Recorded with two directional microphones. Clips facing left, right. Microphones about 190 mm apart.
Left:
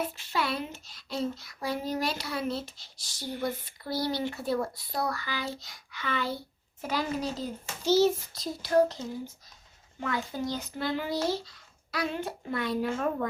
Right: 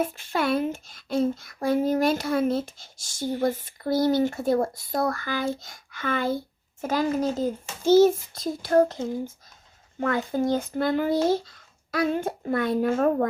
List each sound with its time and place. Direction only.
0.0 s speech: 50° right (ahead or behind)